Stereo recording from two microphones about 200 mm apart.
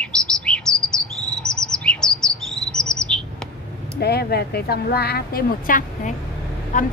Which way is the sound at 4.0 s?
55° left (ahead or behind).